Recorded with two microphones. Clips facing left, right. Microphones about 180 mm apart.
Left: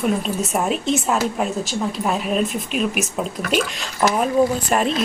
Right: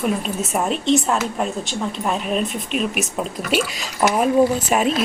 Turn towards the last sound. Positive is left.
turn(degrees=-5)  # may be behind; listen again after turning